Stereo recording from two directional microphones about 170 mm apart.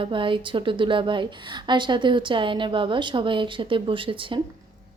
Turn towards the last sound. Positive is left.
turn(degrees=-30)  # may be behind; listen again after turning